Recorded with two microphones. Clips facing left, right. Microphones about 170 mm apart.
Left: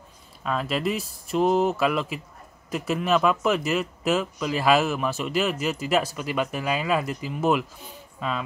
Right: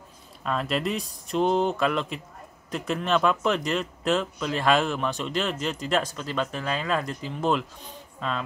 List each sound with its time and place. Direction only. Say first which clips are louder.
0.4 s speech: left 1 dB; centre (ahead or behind)